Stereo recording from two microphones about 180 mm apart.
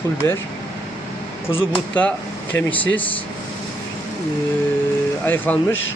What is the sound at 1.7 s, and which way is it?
Speech, 10° left (ahead or behind).